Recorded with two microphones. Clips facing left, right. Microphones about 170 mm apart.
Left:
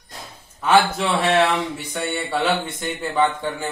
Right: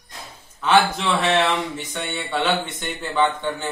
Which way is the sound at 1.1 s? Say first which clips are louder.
Left 2 dB; 10° left (ahead or behind).